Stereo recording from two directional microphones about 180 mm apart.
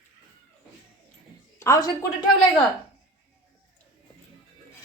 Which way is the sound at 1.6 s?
20° left (ahead or behind).